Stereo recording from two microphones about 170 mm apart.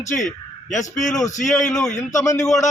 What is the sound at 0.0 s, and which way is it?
Speech, 45° left (ahead or behind).